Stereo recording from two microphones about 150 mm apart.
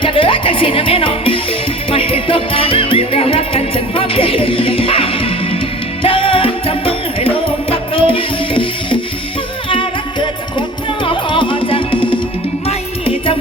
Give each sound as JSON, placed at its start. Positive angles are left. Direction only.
{"t": 0.0, "sound": "music", "side_deg": 35}